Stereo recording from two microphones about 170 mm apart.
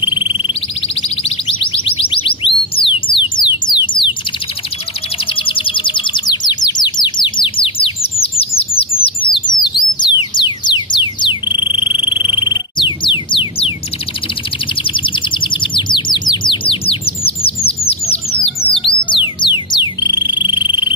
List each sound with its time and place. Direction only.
0.0 s a sound: 30° left (ahead or behind)
1.0 s music: 35° left (ahead or behind)
5.2 s chirp: 30° left (ahead or behind)
9.0 s bird: 30° left (ahead or behind)
12.3 s a sound: 30° left (ahead or behind)
14.8 s bird: 30° left (ahead or behind)
17.6 s music: 35° left (ahead or behind)